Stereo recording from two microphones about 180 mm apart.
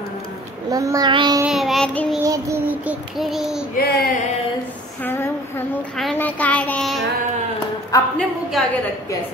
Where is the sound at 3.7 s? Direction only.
55° left (ahead or behind).